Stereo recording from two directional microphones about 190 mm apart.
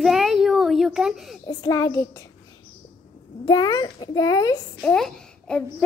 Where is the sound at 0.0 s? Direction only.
Centre (ahead or behind).